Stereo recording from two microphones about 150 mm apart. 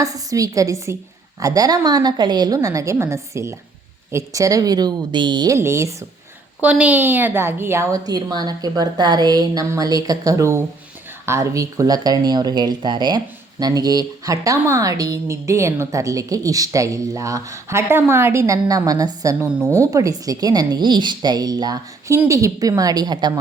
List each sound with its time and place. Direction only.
0.0 s speech: 25° right (ahead or behind)
5.5 s speech: 20° right (ahead or behind)